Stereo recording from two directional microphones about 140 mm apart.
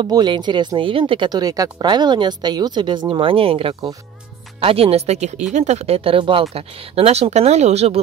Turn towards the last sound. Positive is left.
turn(degrees=-50)  # may be behind; listen again after turning